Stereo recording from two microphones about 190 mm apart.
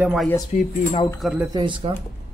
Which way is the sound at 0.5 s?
40° left (ahead or behind).